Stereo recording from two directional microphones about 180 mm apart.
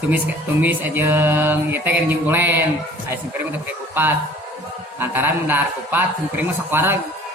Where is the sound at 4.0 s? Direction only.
10° right (ahead or behind).